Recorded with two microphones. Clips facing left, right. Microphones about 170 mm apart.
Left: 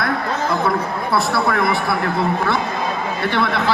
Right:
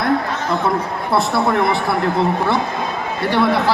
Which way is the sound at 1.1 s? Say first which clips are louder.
Right 3 dB; 20° right (ahead or behind).